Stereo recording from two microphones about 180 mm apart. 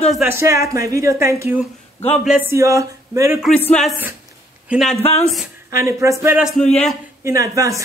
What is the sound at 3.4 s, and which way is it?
Speech, 5° left (ahead or behind).